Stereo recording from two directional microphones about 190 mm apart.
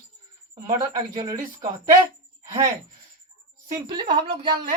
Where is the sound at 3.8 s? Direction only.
25° right (ahead or behind).